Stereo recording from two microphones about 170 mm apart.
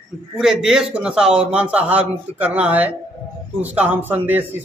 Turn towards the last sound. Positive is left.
turn(degrees=-10)  # may be behind; listen again after turning